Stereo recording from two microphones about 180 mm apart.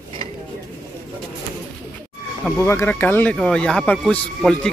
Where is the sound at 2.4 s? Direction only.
10° left (ahead or behind).